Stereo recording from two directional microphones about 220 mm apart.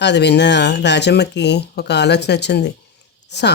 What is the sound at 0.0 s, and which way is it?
Speech, 50° left (ahead or behind).